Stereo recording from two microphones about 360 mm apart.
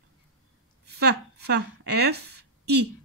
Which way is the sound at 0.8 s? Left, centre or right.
Right.